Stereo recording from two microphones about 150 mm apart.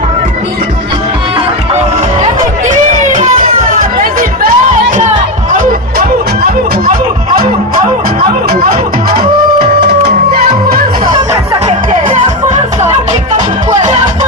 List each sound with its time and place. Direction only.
3.1 s music: 65° right (ahead or behind); by 6.9 s 80° right
8.2 s music: 80° right
9.1 s music: 90° right
12.0 s music: 55° right (ahead or behind)